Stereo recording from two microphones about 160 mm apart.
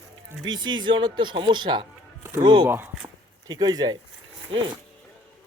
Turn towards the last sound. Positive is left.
turn(degrees=-30)  # may be behind; listen again after turning